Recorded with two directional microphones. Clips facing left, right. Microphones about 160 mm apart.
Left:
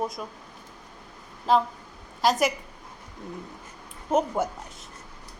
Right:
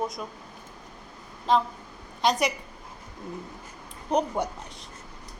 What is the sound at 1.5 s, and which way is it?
A woman's voice, 5° left (ahead or behind).